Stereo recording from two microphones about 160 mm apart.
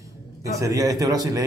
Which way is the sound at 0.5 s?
20° right (ahead or behind).